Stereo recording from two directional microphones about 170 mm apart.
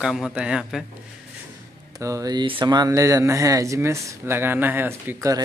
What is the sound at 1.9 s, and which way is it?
Speech, 20° right (ahead or behind).